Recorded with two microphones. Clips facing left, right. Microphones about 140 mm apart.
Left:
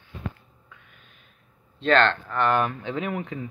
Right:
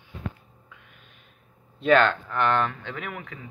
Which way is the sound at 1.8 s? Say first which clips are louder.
Right 1 dB; 10° right (ahead or behind).